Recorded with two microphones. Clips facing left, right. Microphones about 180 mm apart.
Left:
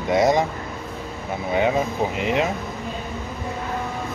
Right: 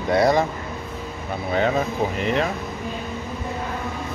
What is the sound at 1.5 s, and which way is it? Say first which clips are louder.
Speech: left 1 dB; 15° left (ahead or behind).